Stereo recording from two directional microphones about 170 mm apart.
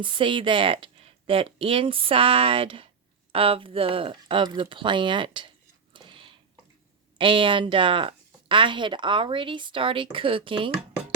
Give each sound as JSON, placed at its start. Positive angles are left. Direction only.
{"t": 0.0, "sound": "speech", "side_deg": -30}
{"t": 5.9, "sound": "a sound", "side_deg": -30}
{"t": 7.2, "sound": "speech", "side_deg": -30}